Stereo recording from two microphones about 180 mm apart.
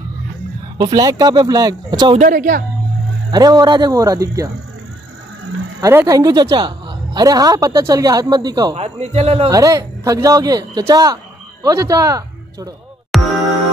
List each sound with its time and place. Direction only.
0.9 s a man's voice: 20° right (ahead or behind)
2.1 s speech: 50° right (ahead or behind)
3.3 s a man's voice: 20° right (ahead or behind)
5.8 s a man's voice: 20° right (ahead or behind)
8.7 s a man's voice: 35° right (ahead or behind)
9.5 s a man's voice: 20° right (ahead or behind)
13.1 s music: centre (ahead or behind)